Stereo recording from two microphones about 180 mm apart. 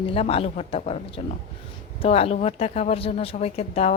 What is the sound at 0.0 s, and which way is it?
Speech, 30° left (ahead or behind).